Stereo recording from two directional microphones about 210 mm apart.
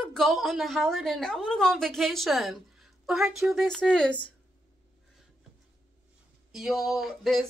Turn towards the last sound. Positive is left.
turn(degrees=0)  # may be behind; listen again after turning